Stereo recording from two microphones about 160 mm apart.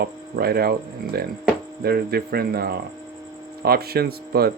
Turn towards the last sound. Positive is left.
turn(degrees=-75)  # may be behind; listen again after turning